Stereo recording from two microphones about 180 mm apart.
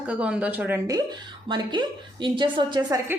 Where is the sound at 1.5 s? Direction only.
25° right (ahead or behind).